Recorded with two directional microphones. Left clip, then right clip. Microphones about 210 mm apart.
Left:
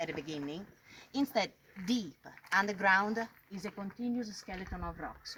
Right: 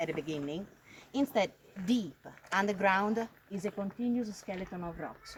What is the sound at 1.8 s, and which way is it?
Speech, 50° left (ahead or behind).